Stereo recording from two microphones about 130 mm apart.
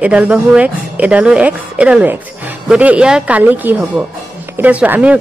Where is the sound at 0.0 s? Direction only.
10° right (ahead or behind).